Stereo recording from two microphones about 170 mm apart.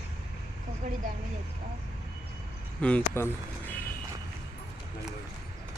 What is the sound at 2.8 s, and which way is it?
Speech, 5° left (ahead or behind).